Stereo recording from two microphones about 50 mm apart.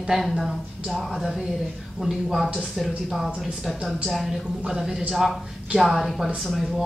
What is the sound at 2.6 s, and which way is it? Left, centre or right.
Speech, centre.